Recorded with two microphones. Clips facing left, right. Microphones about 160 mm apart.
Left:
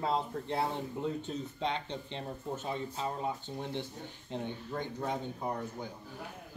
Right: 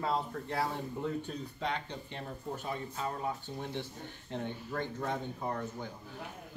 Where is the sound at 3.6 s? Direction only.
15° left (ahead or behind).